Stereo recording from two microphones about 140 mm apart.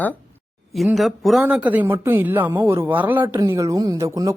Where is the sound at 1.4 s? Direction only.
10° right (ahead or behind).